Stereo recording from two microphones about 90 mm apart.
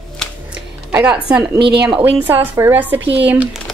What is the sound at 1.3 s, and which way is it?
Speech, 65° right (ahead or behind).